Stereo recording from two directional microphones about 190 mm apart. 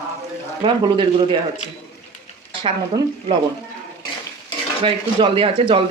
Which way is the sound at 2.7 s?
30° right (ahead or behind).